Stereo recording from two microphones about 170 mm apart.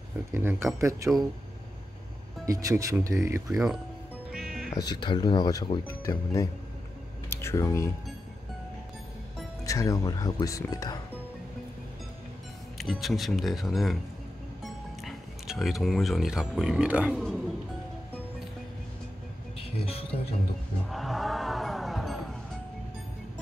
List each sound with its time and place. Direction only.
0.3 s speech: 15° right (ahead or behind)
2.4 s speech: 20° right (ahead or behind)
4.3 s music: 5° right (ahead or behind)
4.7 s speech: 25° left (ahead or behind)
9.7 s speech: 20° left (ahead or behind)
12.7 s speech: centre (ahead or behind)
19.8 s speech: 35° left (ahead or behind)
20.9 s music: centre (ahead or behind)